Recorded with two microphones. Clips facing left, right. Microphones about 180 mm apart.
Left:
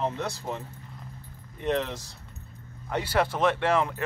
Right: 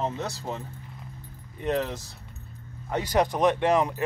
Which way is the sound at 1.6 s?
10° right (ahead or behind).